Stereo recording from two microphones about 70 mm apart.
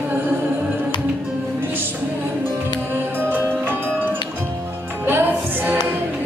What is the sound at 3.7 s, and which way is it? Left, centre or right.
Music, right.